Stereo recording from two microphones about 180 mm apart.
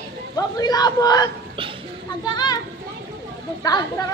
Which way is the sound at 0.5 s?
20° left (ahead or behind).